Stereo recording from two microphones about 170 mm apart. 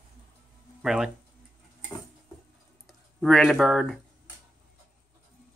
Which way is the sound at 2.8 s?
Centre (ahead or behind).